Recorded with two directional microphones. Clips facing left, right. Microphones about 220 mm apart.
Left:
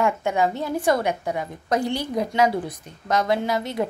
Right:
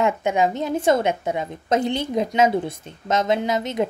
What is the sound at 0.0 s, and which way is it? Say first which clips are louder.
A woman's voice: right 2 dB; 20° right (ahead or behind).